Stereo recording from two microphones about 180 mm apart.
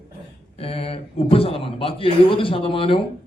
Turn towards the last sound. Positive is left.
turn(degrees=30)  # may be behind; listen again after turning